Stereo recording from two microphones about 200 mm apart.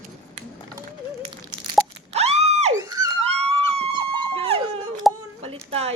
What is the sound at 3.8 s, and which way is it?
Dog, 25° right (ahead or behind).